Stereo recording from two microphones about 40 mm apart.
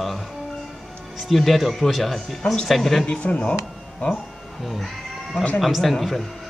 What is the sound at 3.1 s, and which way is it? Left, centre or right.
Speech, left.